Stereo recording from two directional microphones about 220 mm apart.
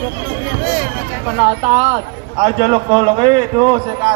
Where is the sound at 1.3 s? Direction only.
25° right (ahead or behind).